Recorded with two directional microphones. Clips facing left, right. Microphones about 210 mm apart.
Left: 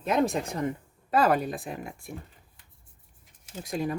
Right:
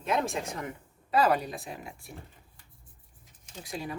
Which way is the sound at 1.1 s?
50° left (ahead or behind).